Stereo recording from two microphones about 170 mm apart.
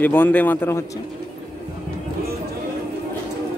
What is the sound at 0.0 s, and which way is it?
Speech, 10° left (ahead or behind).